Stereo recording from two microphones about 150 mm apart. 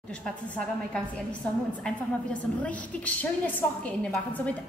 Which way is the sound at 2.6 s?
10° left (ahead or behind).